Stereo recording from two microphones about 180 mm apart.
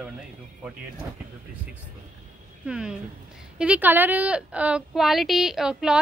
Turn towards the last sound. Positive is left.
turn(degrees=-5)  # may be behind; listen again after turning